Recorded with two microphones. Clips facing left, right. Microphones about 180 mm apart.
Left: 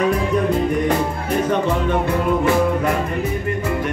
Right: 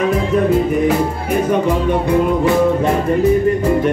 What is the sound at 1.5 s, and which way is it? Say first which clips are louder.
Music: right 4 dB; 15° right (ahead or behind).